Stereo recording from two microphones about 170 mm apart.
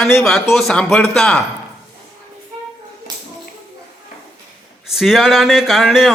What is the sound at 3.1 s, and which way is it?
Tap, 25° right (ahead or behind).